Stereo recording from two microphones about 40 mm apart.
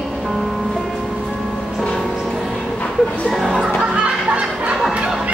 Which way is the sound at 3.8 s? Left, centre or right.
Right.